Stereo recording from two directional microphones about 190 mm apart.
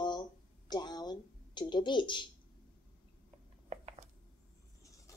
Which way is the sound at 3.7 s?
35° right (ahead or behind).